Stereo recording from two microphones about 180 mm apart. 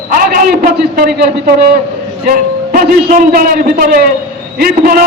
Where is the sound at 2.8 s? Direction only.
55° right (ahead or behind).